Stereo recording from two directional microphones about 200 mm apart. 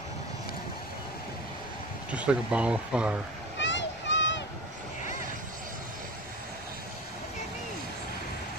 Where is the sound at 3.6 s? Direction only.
65° left (ahead or behind).